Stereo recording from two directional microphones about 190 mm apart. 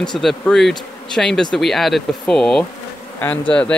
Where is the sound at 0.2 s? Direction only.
Centre (ahead or behind).